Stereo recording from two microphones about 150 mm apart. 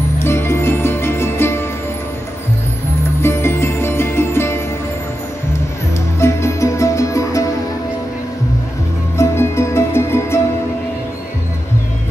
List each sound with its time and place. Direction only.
0.2 s music: 15° left (ahead or behind)
3.2 s music: 15° left (ahead or behind)
6.1 s music: 20° left (ahead or behind)
9.1 s music: 15° left (ahead or behind)